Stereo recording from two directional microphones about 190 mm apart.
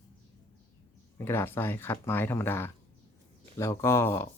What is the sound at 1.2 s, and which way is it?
Speech, 10° left (ahead or behind).